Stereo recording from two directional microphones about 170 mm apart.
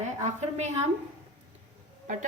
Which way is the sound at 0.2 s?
40° right (ahead or behind).